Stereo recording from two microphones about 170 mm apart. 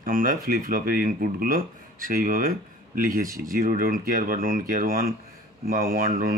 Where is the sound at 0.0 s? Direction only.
55° right (ahead or behind).